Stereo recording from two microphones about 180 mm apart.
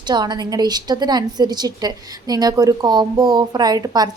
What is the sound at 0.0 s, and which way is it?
A woman's voice, 25° right (ahead or behind).